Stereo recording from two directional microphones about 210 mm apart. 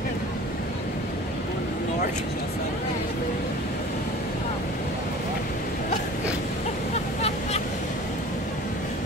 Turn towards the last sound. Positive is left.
turn(degrees=30)  # may be behind; listen again after turning